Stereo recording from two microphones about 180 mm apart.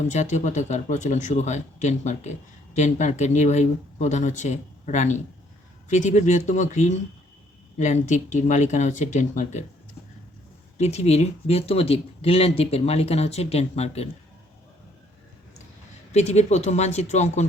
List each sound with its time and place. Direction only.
0.1 s speech: 40° left (ahead or behind)
10.8 s speech: 35° left (ahead or behind)
16.1 s speech: 40° left (ahead or behind)